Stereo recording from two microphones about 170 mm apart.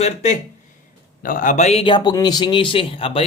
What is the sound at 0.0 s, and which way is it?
Speech, 40° left (ahead or behind).